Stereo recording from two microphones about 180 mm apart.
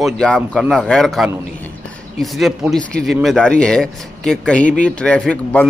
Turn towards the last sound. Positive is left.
turn(degrees=5)  # may be behind; listen again after turning